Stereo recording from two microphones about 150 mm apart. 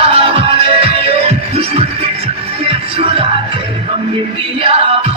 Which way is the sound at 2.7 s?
40° right (ahead or behind).